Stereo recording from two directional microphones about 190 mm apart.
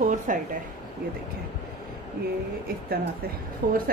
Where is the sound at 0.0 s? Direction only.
45° right (ahead or behind).